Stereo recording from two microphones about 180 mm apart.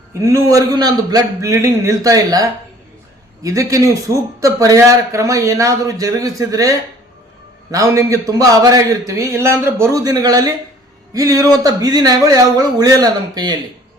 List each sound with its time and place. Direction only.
0.2 s a man's voice: 20° right (ahead or behind)